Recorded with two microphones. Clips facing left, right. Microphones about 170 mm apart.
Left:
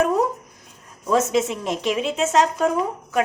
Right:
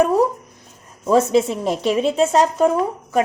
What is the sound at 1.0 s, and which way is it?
A woman's voice, 30° right (ahead or behind).